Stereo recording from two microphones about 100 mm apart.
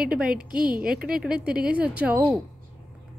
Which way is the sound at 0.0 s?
10° right (ahead or behind).